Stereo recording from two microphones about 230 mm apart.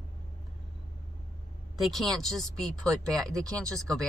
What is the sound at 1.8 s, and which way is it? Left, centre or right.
Speech, centre.